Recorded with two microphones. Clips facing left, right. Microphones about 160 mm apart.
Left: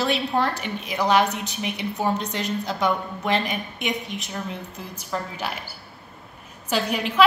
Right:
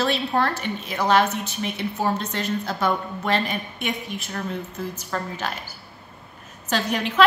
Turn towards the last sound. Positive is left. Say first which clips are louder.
# even
turn(degrees=10)  # may be behind; listen again after turning